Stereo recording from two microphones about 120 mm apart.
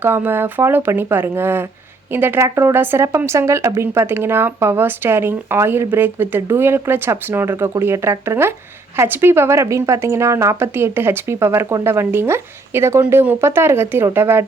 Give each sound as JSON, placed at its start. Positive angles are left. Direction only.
{"t": 0.0, "sound": "speech", "side_deg": -15}